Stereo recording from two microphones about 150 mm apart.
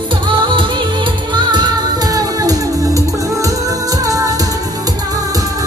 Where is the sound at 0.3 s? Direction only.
35° right (ahead or behind).